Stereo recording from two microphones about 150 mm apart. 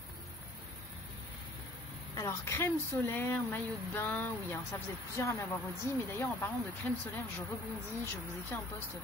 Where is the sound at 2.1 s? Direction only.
20° left (ahead or behind).